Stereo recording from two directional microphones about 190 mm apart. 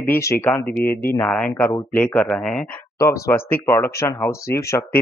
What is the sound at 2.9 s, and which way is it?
Speech, 15° left (ahead or behind).